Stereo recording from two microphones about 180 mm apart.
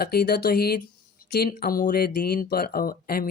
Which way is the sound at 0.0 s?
60° left (ahead or behind).